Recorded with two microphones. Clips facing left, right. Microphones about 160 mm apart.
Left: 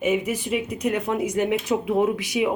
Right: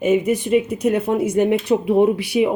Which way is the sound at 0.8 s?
30° right (ahead or behind).